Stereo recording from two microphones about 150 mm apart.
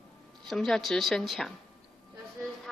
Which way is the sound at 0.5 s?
5° left (ahead or behind).